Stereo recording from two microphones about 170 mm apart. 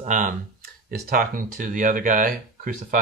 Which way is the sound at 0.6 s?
60° right (ahead or behind).